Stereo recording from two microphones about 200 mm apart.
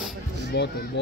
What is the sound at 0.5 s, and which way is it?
Speech, 55° left (ahead or behind).